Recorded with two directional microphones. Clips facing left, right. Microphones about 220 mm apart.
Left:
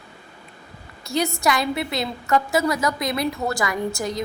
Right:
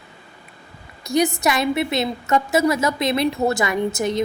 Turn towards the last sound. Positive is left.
turn(degrees=-25)  # may be behind; listen again after turning